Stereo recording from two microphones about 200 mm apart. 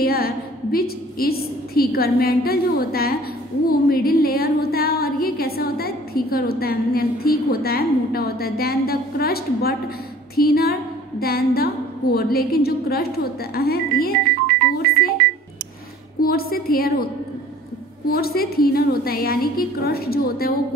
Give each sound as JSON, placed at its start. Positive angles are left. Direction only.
{"t": 0.0, "sound": "a woman's voice", "side_deg": 50}
{"t": 14.9, "sound": "music", "side_deg": 50}
{"t": 16.2, "sound": "a woman's voice", "side_deg": 50}